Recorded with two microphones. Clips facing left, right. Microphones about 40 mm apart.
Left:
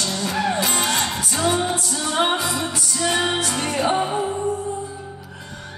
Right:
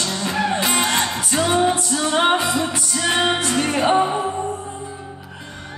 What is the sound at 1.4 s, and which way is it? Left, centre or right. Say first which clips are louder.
Music: right 3 dB; centre.